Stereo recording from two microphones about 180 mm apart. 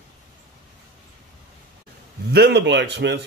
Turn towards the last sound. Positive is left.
turn(degrees=-70)  # may be behind; listen again after turning